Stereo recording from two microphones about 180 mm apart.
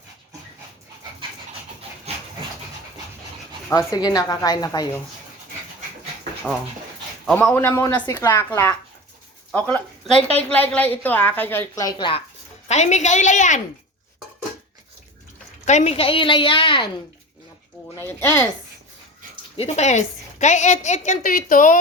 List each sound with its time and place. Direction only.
3.7 s a woman's voice: 20° left (ahead or behind)
7.3 s a woman's voice: 5° left (ahead or behind); by 12.2 s 25° left (ahead or behind)
12.6 s a woman's voice: 40° left (ahead or behind)
15.6 s a woman's voice: 40° left (ahead or behind)
17.9 s a woman's voice: 15° left (ahead or behind)
19.5 s a woman's voice: 40° left (ahead or behind)